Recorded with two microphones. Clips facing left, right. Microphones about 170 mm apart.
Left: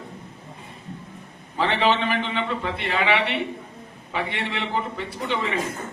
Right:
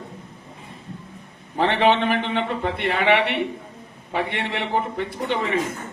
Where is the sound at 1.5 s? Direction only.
55° right (ahead or behind).